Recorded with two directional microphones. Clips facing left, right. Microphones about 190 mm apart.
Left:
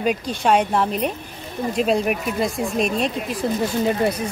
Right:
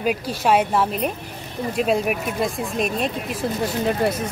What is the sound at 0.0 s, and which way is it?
Speech, 5° right (ahead or behind).